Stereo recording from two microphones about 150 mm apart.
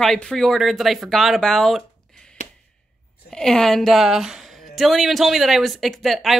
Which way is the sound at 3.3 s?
5° left (ahead or behind).